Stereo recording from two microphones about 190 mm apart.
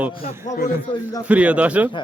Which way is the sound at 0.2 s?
40° left (ahead or behind).